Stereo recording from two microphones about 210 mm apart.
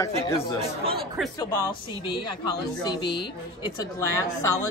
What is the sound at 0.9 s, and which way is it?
Speech, centre (ahead or behind).